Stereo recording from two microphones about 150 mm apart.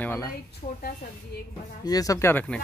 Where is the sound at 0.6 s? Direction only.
50° left (ahead or behind).